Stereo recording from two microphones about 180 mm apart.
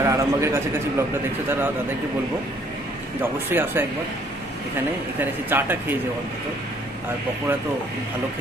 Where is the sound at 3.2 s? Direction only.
10° right (ahead or behind).